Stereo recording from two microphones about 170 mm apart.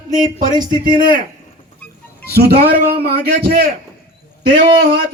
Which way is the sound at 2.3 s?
70° right (ahead or behind).